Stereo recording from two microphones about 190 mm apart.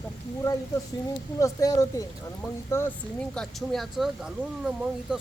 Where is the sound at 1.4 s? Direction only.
15° left (ahead or behind).